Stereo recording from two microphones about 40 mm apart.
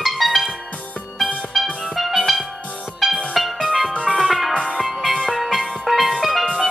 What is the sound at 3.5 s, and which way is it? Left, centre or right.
Music, right.